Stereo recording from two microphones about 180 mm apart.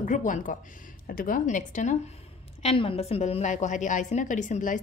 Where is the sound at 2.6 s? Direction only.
30° left (ahead or behind).